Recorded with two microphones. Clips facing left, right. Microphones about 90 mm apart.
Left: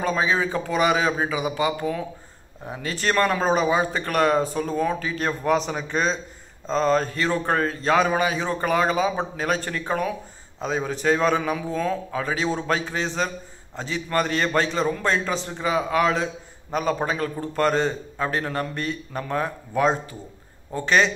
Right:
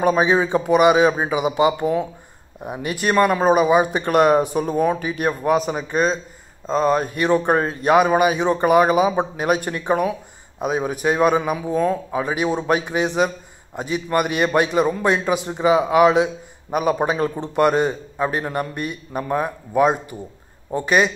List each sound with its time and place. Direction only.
0.0 s speech: 20° right (ahead or behind)